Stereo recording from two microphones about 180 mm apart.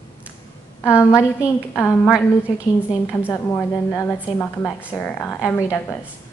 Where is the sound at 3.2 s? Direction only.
10° left (ahead or behind).